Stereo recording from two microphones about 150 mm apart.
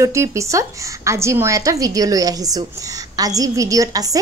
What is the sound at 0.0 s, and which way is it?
A woman's voice, 20° right (ahead or behind).